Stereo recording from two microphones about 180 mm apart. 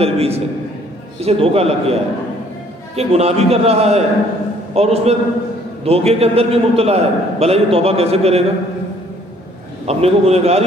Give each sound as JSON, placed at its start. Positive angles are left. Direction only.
{"t": 0.0, "sound": "a man's voice", "side_deg": -35}
{"t": 3.0, "sound": "a man's voice", "side_deg": -35}
{"t": 9.8, "sound": "a man's voice", "side_deg": -35}